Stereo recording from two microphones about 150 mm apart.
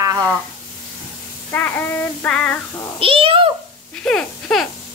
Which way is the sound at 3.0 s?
35° right (ahead or behind).